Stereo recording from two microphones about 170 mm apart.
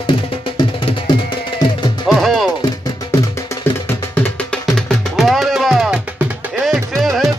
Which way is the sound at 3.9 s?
10° left (ahead or behind).